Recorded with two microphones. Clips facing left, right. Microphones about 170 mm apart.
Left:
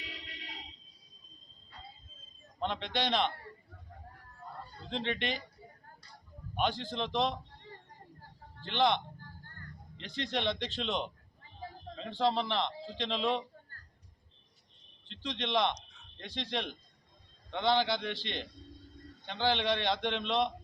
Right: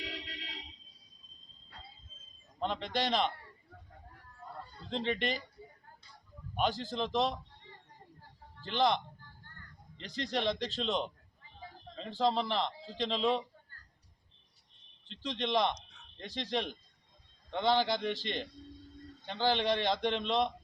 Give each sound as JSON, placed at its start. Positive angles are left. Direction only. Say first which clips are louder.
{"t": 0.0, "sound": "a sound", "louder": "right 5 dB", "side_deg": -80}
{"t": 2.6, "sound": "a man's voice", "louder": "even", "side_deg": 0}
{"t": 4.9, "sound": "a man's voice", "louder": "right 1 dB", "side_deg": 0}
{"t": 6.6, "sound": "a man's voice", "louder": "even", "side_deg": -5}
{"t": 8.6, "sound": "a man's voice", "louder": "left 1 dB", "side_deg": 0}
{"t": 10.2, "sound": "a man's voice", "louder": "right 1 dB", "side_deg": 0}
{"t": 15.0, "sound": "a man's voice", "louder": "right 1 dB", "side_deg": -5}
{"t": 18.1, "sound": "a man's voice", "louder": "right 3 dB", "side_deg": -45}
{"t": 19.2, "sound": "a man's voice", "louder": "right 1 dB", "side_deg": -5}
{"t": 19.5, "sound": "a man's voice", "louder": "right 1 dB", "side_deg": -45}
{"t": 19.8, "sound": "a man's voice", "louder": "right 1 dB", "side_deg": -5}